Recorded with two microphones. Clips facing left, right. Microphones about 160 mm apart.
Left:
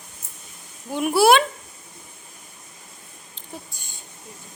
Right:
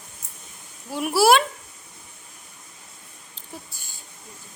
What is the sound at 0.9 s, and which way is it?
Music, centre (ahead or behind).